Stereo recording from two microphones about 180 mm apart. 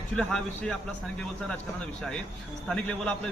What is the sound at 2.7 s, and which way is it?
Speech, 5° left (ahead or behind).